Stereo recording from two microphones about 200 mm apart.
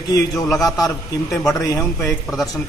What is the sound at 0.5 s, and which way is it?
A man's voice, 15° left (ahead or behind).